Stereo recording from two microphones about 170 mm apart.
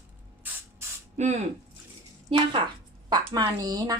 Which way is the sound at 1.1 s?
45° right (ahead or behind).